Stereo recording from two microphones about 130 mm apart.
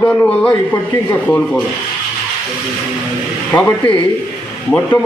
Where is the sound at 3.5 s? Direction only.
10° left (ahead or behind).